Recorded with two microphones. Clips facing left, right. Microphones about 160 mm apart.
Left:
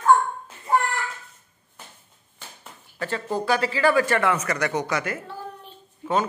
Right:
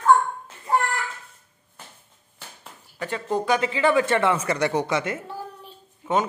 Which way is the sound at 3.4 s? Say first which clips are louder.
Even; 20° right (ahead or behind).